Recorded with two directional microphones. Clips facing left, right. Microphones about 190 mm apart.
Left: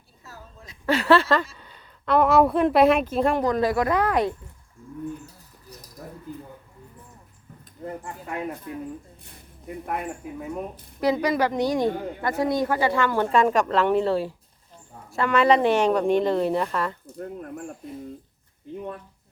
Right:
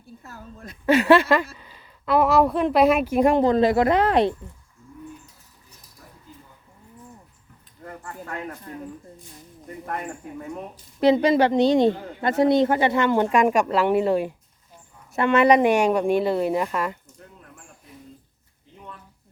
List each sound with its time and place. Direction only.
0.2 s a woman's voice: 55° right (ahead or behind)
0.9 s a woman's voice: 15° right (ahead or behind); by 3.1 s centre (ahead or behind)
3.1 s speech: 15° right (ahead or behind)
6.0 s a sound: 60° left (ahead or behind)
7.9 s speech: 15° left (ahead or behind)
9.8 s speech: 5° left (ahead or behind)
11.0 s a woman's voice: 25° right (ahead or behind)
17.2 s speech: 55° left (ahead or behind)